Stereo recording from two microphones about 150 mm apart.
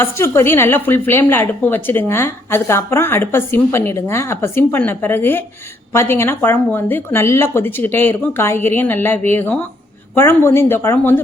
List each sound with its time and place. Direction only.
0.0 s a woman's voice: 15° left (ahead or behind)